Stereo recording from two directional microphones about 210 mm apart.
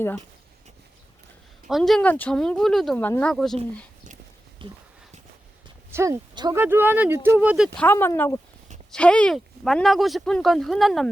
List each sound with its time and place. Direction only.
1.6 s speech: centre (ahead or behind)
4.6 s a sound: 25° right (ahead or behind)
5.9 s speech: 15° right (ahead or behind)
7.9 s speech: 10° left (ahead or behind)